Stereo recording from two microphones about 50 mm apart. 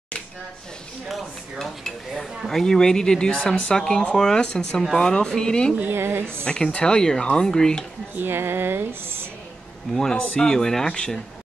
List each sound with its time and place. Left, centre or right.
1.6 s speech: centre
5.9 s speech: right
6.4 s speech: centre
8.1 s a woman's voice: right
10.1 s speech: left
10.4 s speech: centre